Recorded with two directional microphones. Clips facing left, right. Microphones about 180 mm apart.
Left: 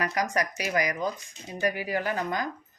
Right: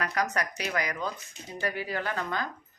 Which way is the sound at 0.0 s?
10° left (ahead or behind).